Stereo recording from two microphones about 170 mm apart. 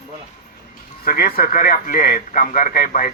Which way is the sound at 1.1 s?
60° left (ahead or behind).